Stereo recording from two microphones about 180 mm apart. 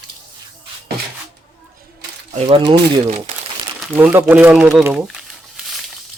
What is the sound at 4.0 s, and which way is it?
Speech, 10° right (ahead or behind).